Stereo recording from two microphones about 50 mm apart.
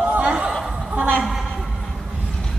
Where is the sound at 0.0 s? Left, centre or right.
Right.